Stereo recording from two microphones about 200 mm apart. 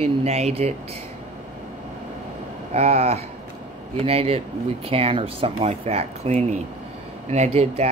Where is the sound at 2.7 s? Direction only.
30° right (ahead or behind).